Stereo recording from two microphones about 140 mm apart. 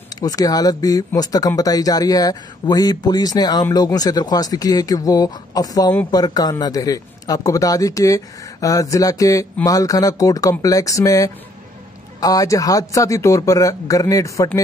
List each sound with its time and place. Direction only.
0.2 s speech: 25° left (ahead or behind)